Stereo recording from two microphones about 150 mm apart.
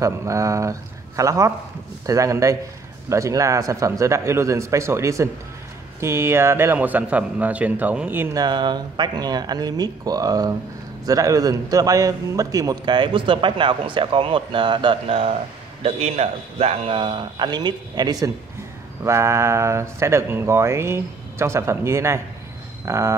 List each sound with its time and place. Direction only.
0.0 s speech: 20° right (ahead or behind)
8.4 s a man's voice: 30° right (ahead or behind)